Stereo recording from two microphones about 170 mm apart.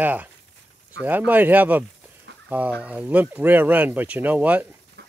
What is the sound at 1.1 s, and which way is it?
Speech, 10° right (ahead or behind).